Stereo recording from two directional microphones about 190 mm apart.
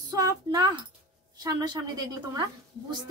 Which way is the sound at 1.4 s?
20° right (ahead or behind).